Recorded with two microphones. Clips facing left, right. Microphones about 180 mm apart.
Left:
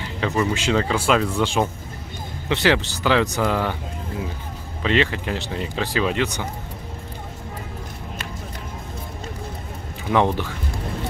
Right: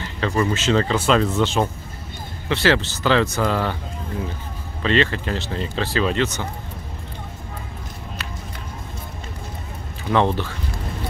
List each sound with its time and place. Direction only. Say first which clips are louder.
0.0 s speech: right 1 dB; 10° left (ahead or behind)
4.8 s speech: right 1 dB; 15° left (ahead or behind)
10.0 s speech: even; 15° left (ahead or behind)